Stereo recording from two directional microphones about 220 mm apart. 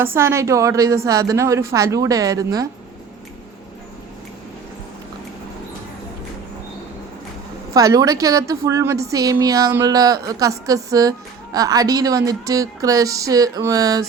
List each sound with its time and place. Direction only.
0.0 s a woman's voice: 10° right (ahead or behind)
7.7 s a woman's voice: 15° right (ahead or behind)